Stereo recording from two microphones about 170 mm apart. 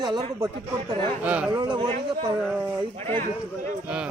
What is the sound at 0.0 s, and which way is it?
Speech, 25° right (ahead or behind).